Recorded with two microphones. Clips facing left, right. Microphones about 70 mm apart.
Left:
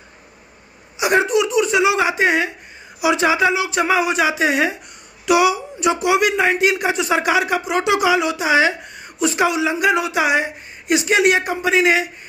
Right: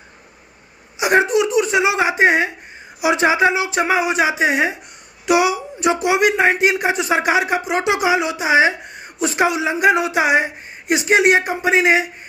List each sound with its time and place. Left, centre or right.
0.9 s a man's voice: right